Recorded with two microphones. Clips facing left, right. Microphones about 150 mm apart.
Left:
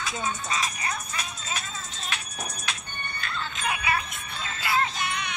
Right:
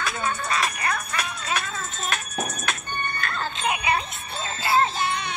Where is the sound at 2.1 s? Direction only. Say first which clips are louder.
Right 6 dB; 50° right (ahead or behind).